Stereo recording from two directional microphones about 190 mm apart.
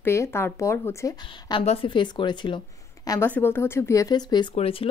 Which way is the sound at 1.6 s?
30° left (ahead or behind).